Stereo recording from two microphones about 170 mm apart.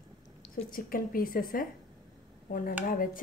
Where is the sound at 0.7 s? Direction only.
55° left (ahead or behind).